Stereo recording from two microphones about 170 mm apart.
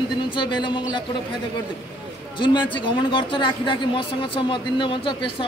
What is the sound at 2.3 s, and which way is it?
A woman's voice, 30° left (ahead or behind).